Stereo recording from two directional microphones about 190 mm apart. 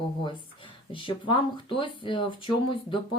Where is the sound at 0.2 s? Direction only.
25° left (ahead or behind).